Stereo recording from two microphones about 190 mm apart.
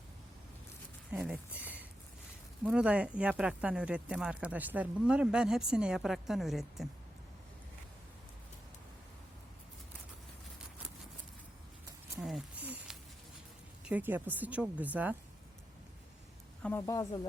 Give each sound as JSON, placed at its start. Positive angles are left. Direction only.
{"t": 1.1, "sound": "speech", "side_deg": -5}
{"t": 12.6, "sound": "a sound", "side_deg": -5}
{"t": 13.8, "sound": "speech", "side_deg": -10}
{"t": 16.6, "sound": "speech", "side_deg": 15}